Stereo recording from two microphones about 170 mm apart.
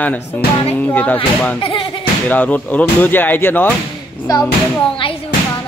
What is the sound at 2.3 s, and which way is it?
Speech, 10° left (ahead or behind).